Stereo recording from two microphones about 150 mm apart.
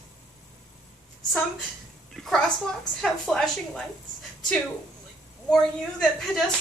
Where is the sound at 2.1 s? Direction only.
Centre (ahead or behind).